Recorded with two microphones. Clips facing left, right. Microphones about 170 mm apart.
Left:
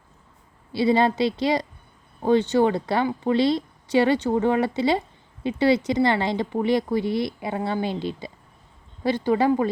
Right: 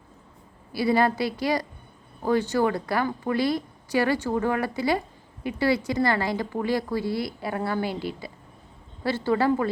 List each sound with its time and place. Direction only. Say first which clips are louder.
0.7 s a woman's voice: left 2 dB; 25° left (ahead or behind)